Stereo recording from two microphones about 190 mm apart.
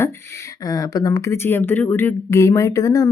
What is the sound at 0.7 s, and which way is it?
Speech, 20° left (ahead or behind).